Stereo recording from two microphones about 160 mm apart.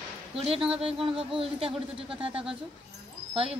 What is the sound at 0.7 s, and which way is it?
Speech, 35° right (ahead or behind).